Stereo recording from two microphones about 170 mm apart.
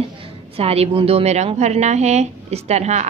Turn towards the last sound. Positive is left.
turn(degrees=-40)  # may be behind; listen again after turning